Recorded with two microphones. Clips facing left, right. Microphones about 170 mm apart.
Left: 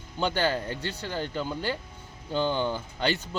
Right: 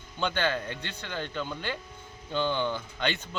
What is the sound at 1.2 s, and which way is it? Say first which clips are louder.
Speech: left 3 dB; 10° left (ahead or behind).